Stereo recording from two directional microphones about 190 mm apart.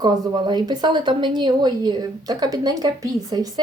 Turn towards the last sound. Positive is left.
turn(degrees=-20)  # may be behind; listen again after turning